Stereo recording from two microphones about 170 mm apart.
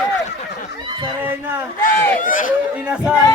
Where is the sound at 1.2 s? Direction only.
10° right (ahead or behind).